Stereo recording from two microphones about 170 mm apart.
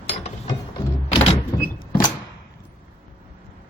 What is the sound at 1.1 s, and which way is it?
Vehicle, 35° left (ahead or behind).